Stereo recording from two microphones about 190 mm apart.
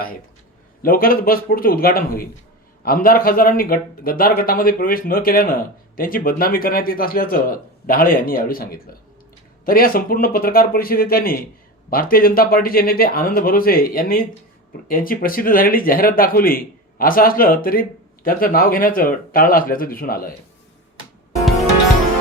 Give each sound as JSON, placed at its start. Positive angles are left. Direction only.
{"t": 0.8, "sound": "a man's voice", "side_deg": 50}